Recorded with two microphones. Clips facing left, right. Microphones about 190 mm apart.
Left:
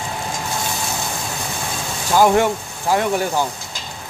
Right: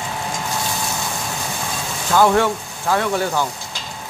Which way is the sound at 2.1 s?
15° left (ahead or behind).